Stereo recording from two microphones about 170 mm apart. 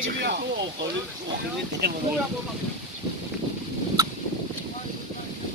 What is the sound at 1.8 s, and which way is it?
Speech, 75° right (ahead or behind).